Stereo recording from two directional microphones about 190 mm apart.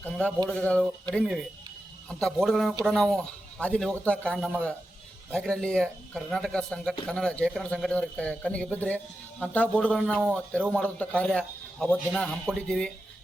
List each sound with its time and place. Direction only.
0.0 s speech: 5° left (ahead or behind)